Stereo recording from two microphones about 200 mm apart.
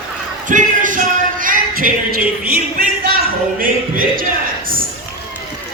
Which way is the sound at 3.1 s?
45° right (ahead or behind).